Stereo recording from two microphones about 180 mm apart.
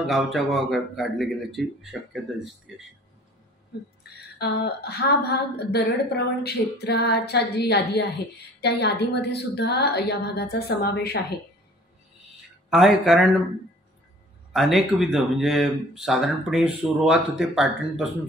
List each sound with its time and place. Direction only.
0.0 s speech: centre (ahead or behind)
4.4 s a woman's voice: 65° left (ahead or behind)
12.6 s speech: centre (ahead or behind)
14.5 s speech: centre (ahead or behind)